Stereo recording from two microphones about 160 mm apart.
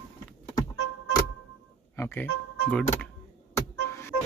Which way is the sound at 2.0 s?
15° left (ahead or behind).